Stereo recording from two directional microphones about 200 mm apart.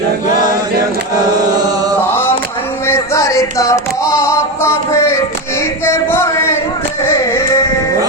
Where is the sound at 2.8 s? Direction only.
15° left (ahead or behind).